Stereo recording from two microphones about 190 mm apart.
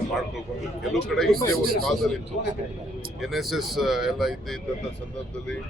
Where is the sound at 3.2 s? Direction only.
Centre (ahead or behind).